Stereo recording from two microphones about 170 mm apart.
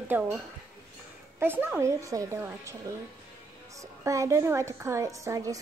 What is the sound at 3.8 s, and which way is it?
A woman's voice, 20° right (ahead or behind).